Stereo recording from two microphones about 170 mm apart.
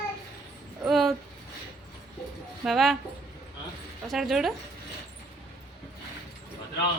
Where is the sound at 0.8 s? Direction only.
Centre (ahead or behind).